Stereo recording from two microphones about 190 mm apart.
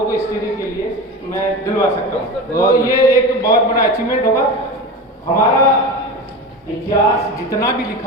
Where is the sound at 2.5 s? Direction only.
15° left (ahead or behind).